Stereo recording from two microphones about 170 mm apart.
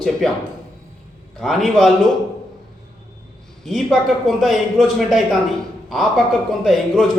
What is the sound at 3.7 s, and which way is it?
Speech, centre (ahead or behind).